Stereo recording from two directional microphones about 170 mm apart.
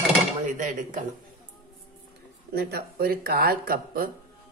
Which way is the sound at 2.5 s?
70° right (ahead or behind).